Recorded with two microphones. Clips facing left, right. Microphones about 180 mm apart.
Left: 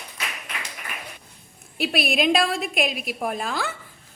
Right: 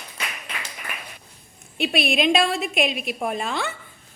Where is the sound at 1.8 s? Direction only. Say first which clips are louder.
Right 1 dB; centre (ahead or behind).